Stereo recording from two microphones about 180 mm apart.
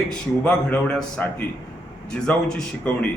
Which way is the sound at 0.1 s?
5° left (ahead or behind).